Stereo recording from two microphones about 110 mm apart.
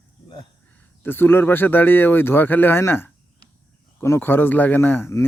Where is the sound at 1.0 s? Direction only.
20° left (ahead or behind).